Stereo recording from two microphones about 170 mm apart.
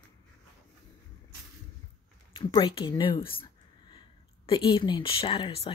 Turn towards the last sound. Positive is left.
turn(degrees=35)  # may be behind; listen again after turning